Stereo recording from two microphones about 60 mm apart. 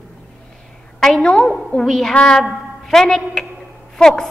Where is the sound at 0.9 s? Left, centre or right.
Centre.